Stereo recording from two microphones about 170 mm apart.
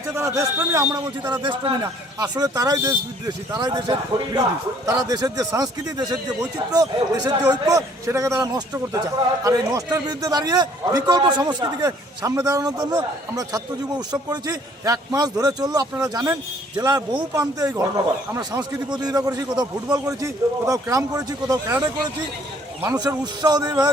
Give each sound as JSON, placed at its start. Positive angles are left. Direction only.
{"t": 0.2, "sound": "a man's voice", "side_deg": -15}
{"t": 7.3, "sound": "a man's voice", "side_deg": -20}